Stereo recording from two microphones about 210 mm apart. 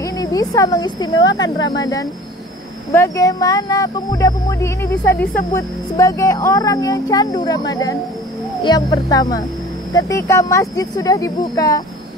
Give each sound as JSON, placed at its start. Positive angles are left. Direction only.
{"t": 0.0, "sound": "a woman's voice", "side_deg": 15}